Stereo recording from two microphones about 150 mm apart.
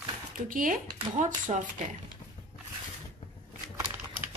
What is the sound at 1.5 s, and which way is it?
Speech, 40° right (ahead or behind).